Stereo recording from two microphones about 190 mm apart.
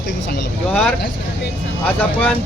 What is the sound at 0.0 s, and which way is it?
Speech, 65° left (ahead or behind).